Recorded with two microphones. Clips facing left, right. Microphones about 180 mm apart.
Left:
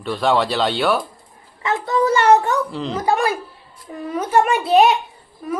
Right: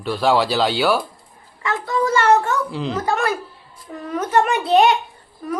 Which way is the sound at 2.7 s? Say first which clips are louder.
Right 1 dB; centre (ahead or behind).